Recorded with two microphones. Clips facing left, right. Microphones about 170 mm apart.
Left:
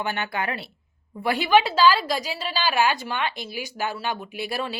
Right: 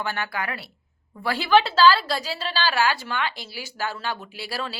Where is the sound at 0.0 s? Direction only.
20° left (ahead or behind).